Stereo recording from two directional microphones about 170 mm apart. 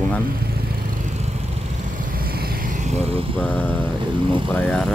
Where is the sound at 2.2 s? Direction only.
60° right (ahead or behind).